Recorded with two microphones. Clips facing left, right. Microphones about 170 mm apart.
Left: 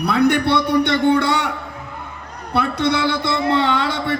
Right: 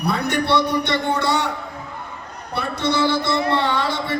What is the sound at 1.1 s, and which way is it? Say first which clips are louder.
Speech: left 3 dB; 60° left (ahead or behind).